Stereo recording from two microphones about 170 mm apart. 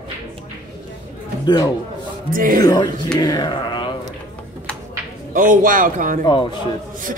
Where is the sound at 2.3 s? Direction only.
55° right (ahead or behind).